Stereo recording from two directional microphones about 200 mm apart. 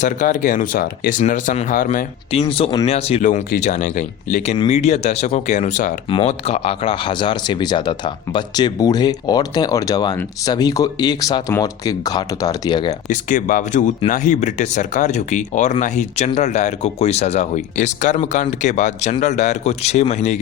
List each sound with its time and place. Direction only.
0.0 s speech: 40° left (ahead or behind)
2.3 s speech: 30° left (ahead or behind)
13.1 s speech: 40° left (ahead or behind)